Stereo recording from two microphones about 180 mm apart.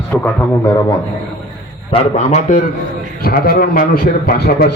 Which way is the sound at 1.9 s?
40° left (ahead or behind).